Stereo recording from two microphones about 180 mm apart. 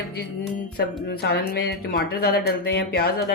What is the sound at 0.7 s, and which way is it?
Speech, 65° left (ahead or behind).